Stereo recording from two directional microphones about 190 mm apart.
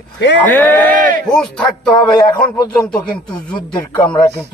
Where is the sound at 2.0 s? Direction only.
20° left (ahead or behind).